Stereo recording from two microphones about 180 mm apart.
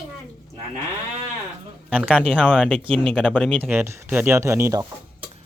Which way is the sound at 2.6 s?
5° left (ahead or behind).